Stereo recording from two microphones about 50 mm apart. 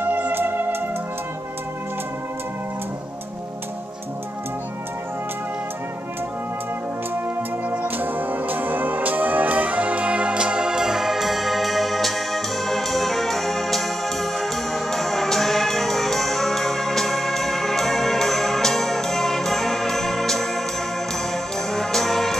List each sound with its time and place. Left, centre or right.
0.0 s music: right
0.3 s music: right
7.7 s music: right; by 20.6 s centre
21.7 s brass instrument: centre